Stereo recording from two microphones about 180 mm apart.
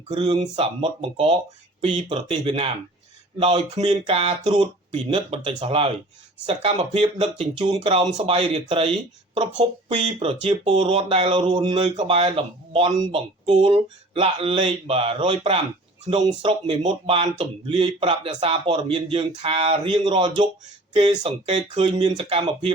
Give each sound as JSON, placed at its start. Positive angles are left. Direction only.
{"t": 0.1, "sound": "speech", "side_deg": -25}